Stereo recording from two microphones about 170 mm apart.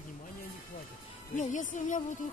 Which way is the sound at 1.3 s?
45° left (ahead or behind).